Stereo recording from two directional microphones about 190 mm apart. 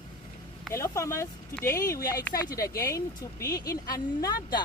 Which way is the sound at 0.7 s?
15° left (ahead or behind).